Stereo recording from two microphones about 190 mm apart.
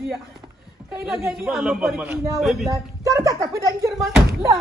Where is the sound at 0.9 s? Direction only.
5° right (ahead or behind).